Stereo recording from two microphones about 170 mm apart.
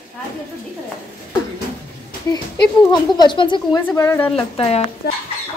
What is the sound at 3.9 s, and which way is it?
Speech, 10° left (ahead or behind).